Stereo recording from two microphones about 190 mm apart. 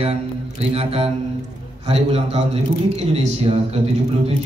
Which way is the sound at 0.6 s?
30° right (ahead or behind).